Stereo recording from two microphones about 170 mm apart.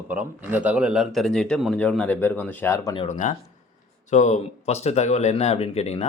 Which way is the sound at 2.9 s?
40° left (ahead or behind).